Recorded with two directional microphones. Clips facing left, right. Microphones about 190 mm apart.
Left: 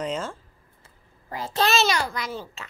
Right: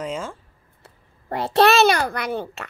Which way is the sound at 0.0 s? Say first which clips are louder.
Even; 5° right (ahead or behind).